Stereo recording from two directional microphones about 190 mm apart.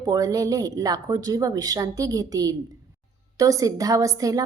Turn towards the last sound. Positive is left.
turn(degrees=-20)  # may be behind; listen again after turning